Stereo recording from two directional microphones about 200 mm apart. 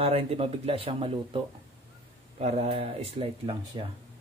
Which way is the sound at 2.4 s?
30° right (ahead or behind).